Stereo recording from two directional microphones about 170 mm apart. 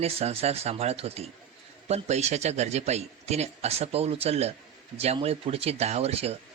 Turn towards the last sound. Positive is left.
turn(degrees=-35)  # may be behind; listen again after turning